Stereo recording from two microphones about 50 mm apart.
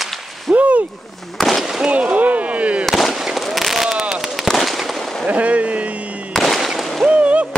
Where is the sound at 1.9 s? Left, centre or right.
Right.